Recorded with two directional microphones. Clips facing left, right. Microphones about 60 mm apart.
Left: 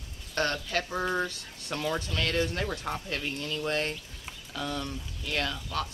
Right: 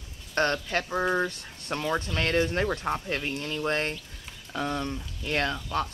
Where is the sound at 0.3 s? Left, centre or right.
Right.